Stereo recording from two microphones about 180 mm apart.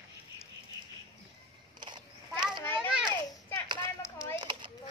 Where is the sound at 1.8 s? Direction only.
25° right (ahead or behind).